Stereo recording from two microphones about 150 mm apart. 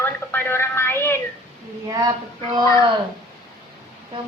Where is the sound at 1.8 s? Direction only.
25° right (ahead or behind).